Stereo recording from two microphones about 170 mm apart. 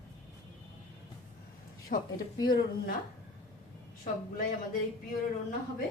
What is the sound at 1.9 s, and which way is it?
Speech, 60° left (ahead or behind).